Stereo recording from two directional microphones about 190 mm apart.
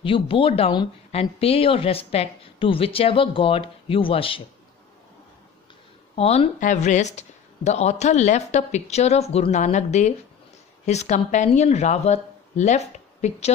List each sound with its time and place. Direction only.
0.0 s speech: 30° left (ahead or behind)
6.1 s speech: 35° left (ahead or behind)